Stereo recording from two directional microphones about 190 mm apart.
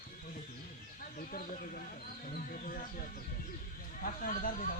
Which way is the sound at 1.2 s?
45° left (ahead or behind).